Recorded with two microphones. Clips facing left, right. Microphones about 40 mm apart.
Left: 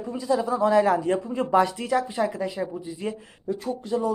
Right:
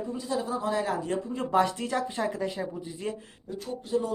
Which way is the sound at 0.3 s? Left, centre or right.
Left.